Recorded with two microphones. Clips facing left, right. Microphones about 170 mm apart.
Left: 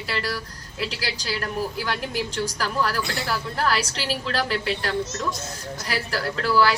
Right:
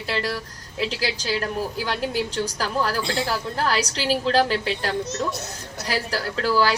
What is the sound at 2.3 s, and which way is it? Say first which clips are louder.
Speech: right 1 dB; 40° right (ahead or behind).